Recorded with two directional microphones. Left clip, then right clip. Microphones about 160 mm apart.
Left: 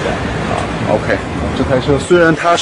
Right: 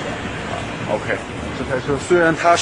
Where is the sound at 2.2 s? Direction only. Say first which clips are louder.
Left 1 dB; 25° right (ahead or behind).